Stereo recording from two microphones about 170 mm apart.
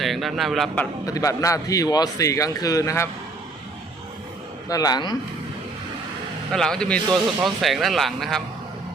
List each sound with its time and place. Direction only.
0.0 s a man's voice: centre (ahead or behind)
1.0 s a man's voice: 20° left (ahead or behind)
4.7 s a man's voice: 20° left (ahead or behind)
6.5 s speech: 5° left (ahead or behind)